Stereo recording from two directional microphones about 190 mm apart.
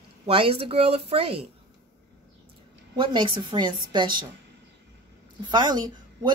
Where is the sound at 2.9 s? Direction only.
25° right (ahead or behind).